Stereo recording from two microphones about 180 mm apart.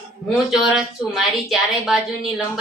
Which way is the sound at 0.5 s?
5° right (ahead or behind).